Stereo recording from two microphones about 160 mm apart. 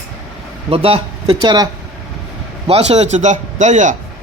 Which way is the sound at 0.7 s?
35° right (ahead or behind).